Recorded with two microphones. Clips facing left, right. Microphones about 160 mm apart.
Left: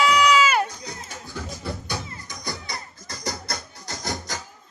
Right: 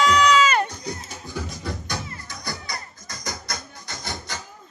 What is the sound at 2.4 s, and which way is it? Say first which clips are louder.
Music: even; 25° left (ahead or behind).